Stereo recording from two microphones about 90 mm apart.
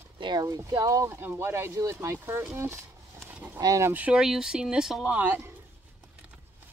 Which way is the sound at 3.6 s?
45° right (ahead or behind).